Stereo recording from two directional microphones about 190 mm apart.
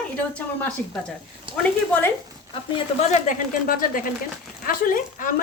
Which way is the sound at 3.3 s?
45° left (ahead or behind).